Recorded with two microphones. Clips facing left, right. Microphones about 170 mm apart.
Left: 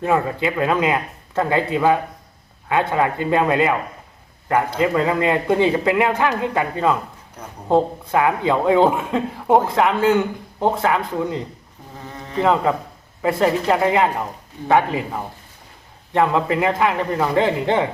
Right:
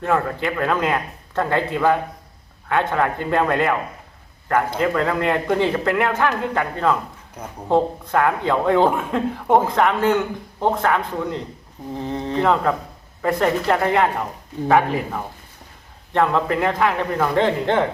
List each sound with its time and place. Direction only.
0.0 s a man's voice: 10° left (ahead or behind)
12.0 s insect: 30° right (ahead or behind)
12.4 s speech: 5° left (ahead or behind)
16.1 s a man's voice: 5° left (ahead or behind)